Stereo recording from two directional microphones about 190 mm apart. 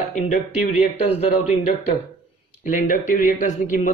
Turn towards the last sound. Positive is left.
turn(degrees=40)  # may be behind; listen again after turning